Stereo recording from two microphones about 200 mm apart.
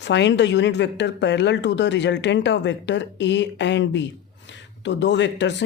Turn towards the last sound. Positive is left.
turn(degrees=65)  # may be behind; listen again after turning